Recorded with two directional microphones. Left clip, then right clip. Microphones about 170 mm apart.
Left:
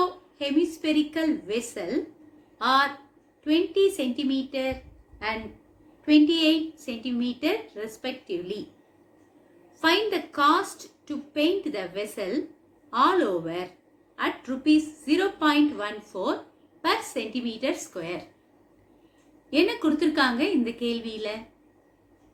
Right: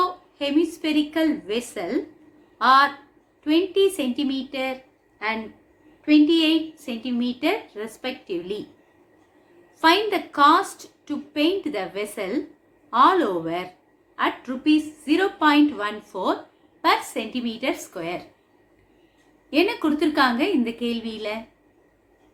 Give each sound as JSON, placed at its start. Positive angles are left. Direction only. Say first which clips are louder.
{"t": 0.0, "sound": "a woman's voice", "louder": "right 3 dB", "side_deg": -50}
{"t": 6.1, "sound": "a woman's voice", "louder": "right 2 dB", "side_deg": -40}
{"t": 9.8, "sound": "a woman's voice", "louder": "right 5 dB", "side_deg": -50}
{"t": 19.5, "sound": "a woman's voice", "louder": "right 2 dB", "side_deg": -40}